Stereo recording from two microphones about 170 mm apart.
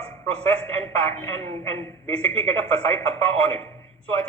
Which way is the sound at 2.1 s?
35° right (ahead or behind).